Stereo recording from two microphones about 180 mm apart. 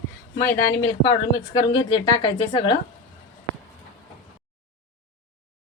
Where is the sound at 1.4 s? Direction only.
25° left (ahead or behind).